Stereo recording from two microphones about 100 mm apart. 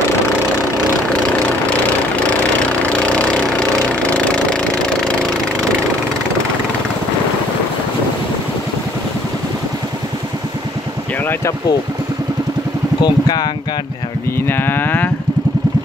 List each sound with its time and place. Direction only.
3.2 s engine: 10° left (ahead or behind)
13.0 s speech: 45° left (ahead or behind)
14.5 s cattle: 20° left (ahead or behind)